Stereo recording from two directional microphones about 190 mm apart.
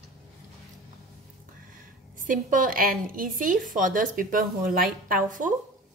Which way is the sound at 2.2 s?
45° right (ahead or behind).